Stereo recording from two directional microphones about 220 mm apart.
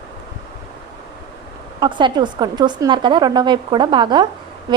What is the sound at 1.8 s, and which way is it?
A woman's voice, 20° right (ahead or behind).